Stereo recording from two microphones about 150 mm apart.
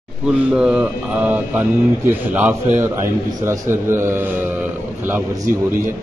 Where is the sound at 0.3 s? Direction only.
5° right (ahead or behind).